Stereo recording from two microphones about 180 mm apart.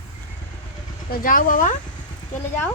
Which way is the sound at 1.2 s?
50° left (ahead or behind).